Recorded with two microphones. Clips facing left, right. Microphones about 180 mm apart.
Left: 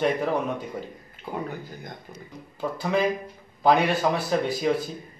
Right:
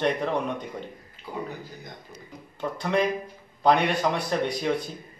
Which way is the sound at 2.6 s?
5° left (ahead or behind).